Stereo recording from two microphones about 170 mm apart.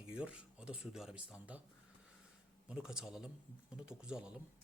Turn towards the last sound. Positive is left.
turn(degrees=-5)  # may be behind; listen again after turning